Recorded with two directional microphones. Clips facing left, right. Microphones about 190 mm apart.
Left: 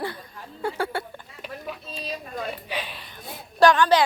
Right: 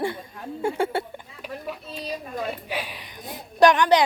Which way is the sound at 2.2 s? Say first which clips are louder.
Right 2 dB; 10° right (ahead or behind).